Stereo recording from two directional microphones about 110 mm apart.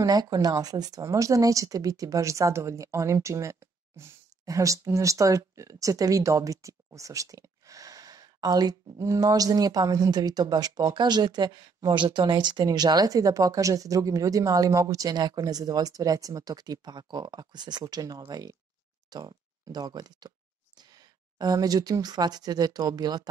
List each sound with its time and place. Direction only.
0.0 s a woman's voice: 35° right (ahead or behind)